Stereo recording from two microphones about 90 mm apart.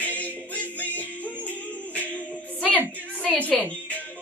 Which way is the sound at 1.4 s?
15° left (ahead or behind).